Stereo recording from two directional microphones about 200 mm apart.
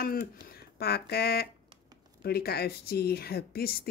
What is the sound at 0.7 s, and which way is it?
Speech, 50° left (ahead or behind).